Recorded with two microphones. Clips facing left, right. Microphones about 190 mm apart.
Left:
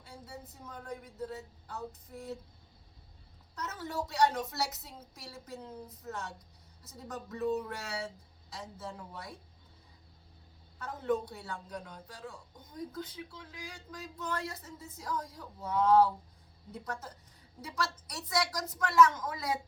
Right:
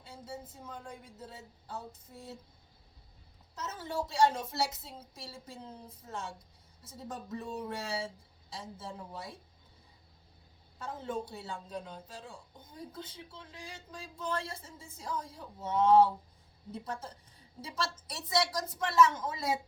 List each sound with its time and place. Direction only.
1.3 s speech: 25° right (ahead or behind)
3.5 s speech: 25° right (ahead or behind)
10.8 s speech: 25° right (ahead or behind)